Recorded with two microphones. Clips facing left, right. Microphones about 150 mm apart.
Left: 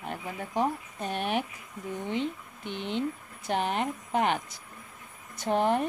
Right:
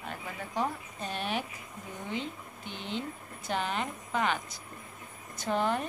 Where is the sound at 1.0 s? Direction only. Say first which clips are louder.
Left 4 dB; 60° left (ahead or behind).